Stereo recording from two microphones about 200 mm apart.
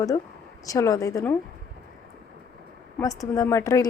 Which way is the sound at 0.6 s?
15° left (ahead or behind).